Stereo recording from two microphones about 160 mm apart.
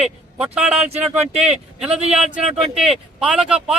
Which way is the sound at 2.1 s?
5° right (ahead or behind).